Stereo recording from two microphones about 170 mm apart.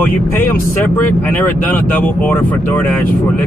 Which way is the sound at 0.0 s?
10° left (ahead or behind).